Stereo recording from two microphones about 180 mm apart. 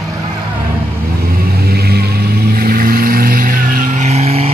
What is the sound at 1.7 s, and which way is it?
Vehicle, 60° right (ahead or behind).